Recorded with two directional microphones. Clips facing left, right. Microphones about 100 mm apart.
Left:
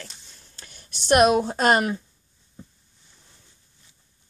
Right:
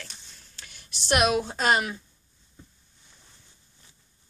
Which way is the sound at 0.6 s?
40° left (ahead or behind).